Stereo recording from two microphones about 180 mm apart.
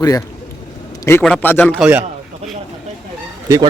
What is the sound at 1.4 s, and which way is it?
Speech, 10° left (ahead or behind).